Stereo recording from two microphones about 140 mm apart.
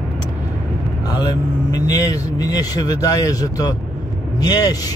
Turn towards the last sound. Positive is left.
turn(degrees=25)  # may be behind; listen again after turning